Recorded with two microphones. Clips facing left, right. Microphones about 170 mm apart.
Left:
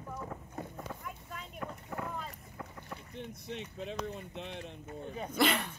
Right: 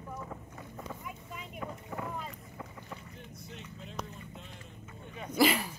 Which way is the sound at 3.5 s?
80° left.